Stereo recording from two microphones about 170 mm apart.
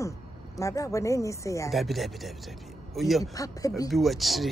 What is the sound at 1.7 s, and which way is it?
Speech, centre (ahead or behind).